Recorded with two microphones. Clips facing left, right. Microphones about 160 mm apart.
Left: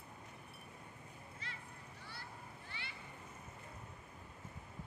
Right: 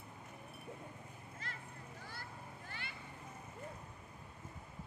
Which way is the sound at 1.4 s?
45° right (ahead or behind).